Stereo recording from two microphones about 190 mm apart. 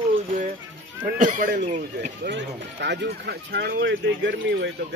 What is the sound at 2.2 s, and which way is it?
Speech, 65° right (ahead or behind).